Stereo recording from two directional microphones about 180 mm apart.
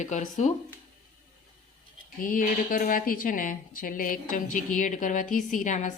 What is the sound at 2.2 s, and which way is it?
Speech, 50° left (ahead or behind).